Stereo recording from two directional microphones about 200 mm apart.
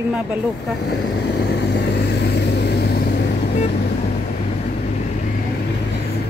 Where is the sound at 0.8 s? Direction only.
55° left (ahead or behind).